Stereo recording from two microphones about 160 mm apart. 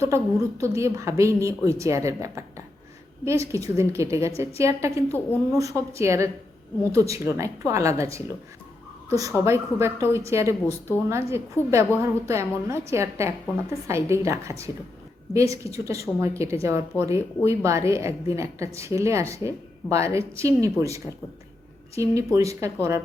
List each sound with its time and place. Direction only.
0.6 s a woman's voice: 20° right (ahead or behind)
5.0 s speech: 10° left (ahead or behind)
5.5 s a woman's voice: 20° right (ahead or behind)
10.6 s speech: 10° left (ahead or behind)
11.1 s a woman's voice: 15° right (ahead or behind)